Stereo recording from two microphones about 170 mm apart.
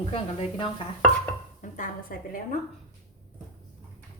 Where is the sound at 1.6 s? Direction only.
50° left (ahead or behind).